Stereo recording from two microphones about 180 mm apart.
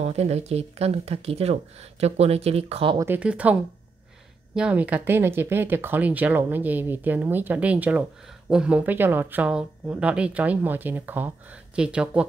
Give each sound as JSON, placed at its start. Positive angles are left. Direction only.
{"t": 0.0, "sound": "speech", "side_deg": -35}
{"t": 3.0, "sound": "speech", "side_deg": -10}
{"t": 4.6, "sound": "speech", "side_deg": -5}